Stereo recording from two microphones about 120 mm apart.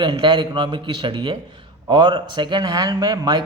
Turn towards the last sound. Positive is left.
turn(degrees=-35)  # may be behind; listen again after turning